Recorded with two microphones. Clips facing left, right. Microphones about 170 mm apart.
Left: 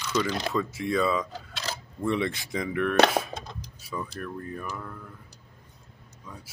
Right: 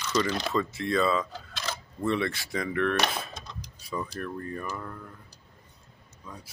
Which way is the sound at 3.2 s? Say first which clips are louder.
Left 8 dB; 50° left (ahead or behind).